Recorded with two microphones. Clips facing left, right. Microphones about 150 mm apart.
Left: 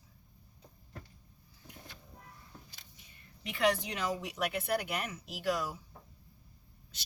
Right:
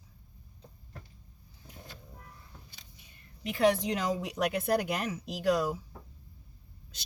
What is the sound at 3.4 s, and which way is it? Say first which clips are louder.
Speech: right 4 dB; 40° right (ahead or behind).